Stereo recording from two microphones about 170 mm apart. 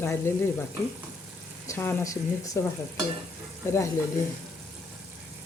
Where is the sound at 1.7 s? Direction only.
15° left (ahead or behind).